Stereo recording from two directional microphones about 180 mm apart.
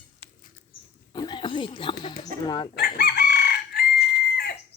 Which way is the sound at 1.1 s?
25° left (ahead or behind).